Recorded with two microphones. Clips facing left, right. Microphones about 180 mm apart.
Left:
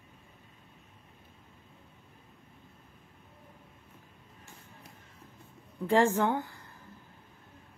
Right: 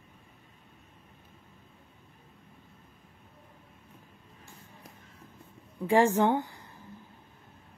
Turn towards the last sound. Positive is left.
turn(degrees=-20)  # may be behind; listen again after turning